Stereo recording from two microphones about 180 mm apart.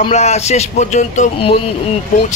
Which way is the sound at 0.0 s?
35° left (ahead or behind).